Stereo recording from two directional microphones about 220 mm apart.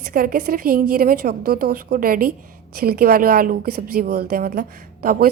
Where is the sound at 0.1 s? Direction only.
40° right (ahead or behind).